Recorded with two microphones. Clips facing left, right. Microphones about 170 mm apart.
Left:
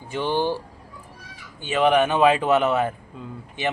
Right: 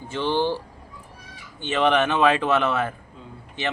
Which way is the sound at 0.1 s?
15° left (ahead or behind).